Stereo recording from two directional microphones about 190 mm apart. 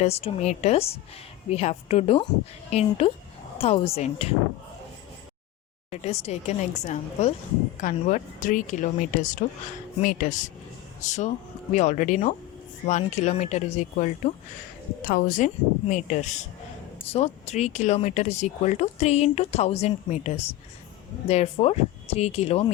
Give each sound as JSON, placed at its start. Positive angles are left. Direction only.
{"t": 0.0, "sound": "speech", "side_deg": 35}
{"t": 5.9, "sound": "speech", "side_deg": 35}